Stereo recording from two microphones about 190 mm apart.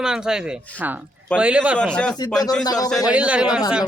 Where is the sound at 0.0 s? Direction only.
5° right (ahead or behind).